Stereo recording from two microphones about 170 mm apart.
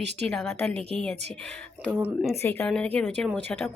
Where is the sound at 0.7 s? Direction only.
35° right (ahead or behind).